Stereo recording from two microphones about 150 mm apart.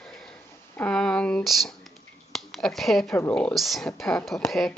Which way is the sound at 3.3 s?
5° left (ahead or behind).